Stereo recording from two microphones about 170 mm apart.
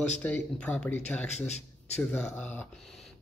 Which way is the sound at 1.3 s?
40° left (ahead or behind).